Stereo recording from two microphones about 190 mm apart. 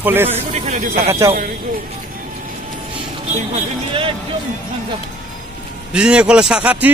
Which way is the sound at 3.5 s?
30° right (ahead or behind).